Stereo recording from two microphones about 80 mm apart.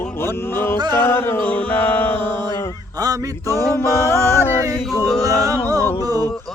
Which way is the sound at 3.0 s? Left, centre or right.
Right.